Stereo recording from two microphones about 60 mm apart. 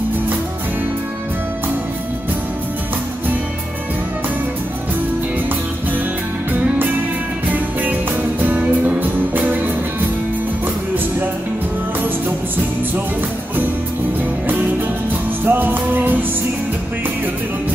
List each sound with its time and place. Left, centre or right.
8.4 s music: right
15.4 s music: right